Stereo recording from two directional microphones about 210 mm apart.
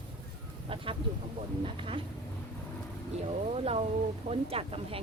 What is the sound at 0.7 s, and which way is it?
Speech, 25° right (ahead or behind).